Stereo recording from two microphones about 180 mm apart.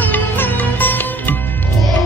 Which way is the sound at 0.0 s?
10° left (ahead or behind).